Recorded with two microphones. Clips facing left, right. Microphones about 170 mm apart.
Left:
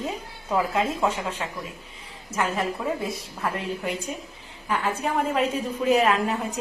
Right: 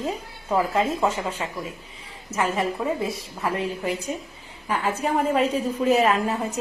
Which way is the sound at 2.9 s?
Centre (ahead or behind).